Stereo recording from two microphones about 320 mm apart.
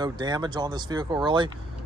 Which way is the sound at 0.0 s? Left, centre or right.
Centre.